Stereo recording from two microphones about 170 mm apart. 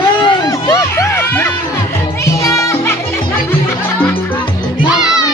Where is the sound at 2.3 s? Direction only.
20° left (ahead or behind).